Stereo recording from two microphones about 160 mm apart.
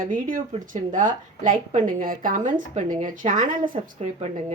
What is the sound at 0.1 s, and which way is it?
A woman's voice, 55° right (ahead or behind).